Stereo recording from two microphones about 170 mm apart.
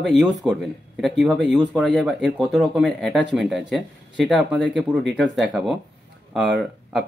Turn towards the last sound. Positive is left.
turn(degrees=0)  # may be behind; listen again after turning